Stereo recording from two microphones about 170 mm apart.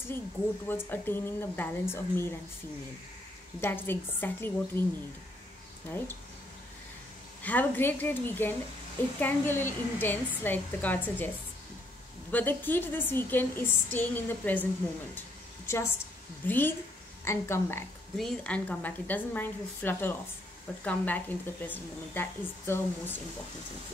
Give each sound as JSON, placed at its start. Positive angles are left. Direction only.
{"t": 0.7, "sound": "a woman's voice", "side_deg": 10}
{"t": 3.6, "sound": "a woman's voice", "side_deg": 10}
{"t": 5.9, "sound": "a woman's voice", "side_deg": 10}
{"t": 7.4, "sound": "a woman's voice", "side_deg": 10}
{"t": 12.3, "sound": "a woman's voice", "side_deg": 10}
{"t": 18.1, "sound": "a woman's voice", "side_deg": 5}